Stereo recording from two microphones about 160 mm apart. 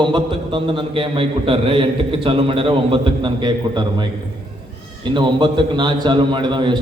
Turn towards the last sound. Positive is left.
turn(degrees=-30)  # may be behind; listen again after turning